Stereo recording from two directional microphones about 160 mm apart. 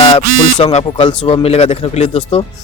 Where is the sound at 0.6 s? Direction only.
40° left (ahead or behind).